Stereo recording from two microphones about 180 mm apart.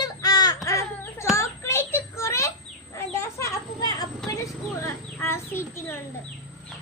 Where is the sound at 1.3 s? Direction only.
15° left (ahead or behind).